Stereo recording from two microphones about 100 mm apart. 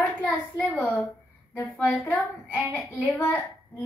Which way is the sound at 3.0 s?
20° left (ahead or behind).